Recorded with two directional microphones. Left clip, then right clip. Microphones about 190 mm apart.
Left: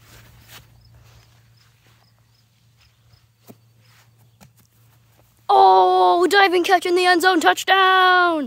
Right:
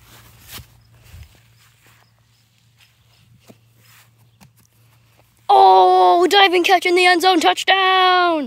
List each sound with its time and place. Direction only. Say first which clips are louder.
0.2 s walk: right 8 dB; 45° right (ahead or behind)
3.5 s walk: left 1 dB; 25° left (ahead or behind)
3.8 s walk: right 6 dB; 55° right (ahead or behind)
5.1 s speech: right 3 dB; centre (ahead or behind)